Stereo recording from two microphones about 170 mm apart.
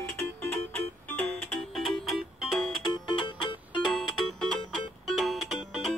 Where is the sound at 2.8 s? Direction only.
25° left (ahead or behind).